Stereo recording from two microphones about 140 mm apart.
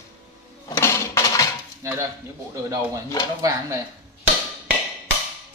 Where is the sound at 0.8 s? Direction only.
20° left (ahead or behind).